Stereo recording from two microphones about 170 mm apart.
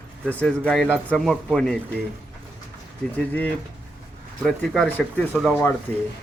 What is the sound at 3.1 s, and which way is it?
Speech, 10° left (ahead or behind).